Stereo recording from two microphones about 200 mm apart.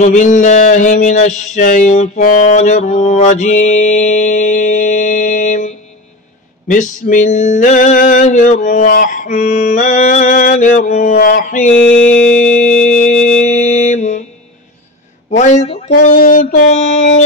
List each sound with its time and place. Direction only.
0.0 s a sound: 40° left (ahead or behind)
15.2 s a man's voice: 35° left (ahead or behind)
16.0 s mantra: 40° left (ahead or behind)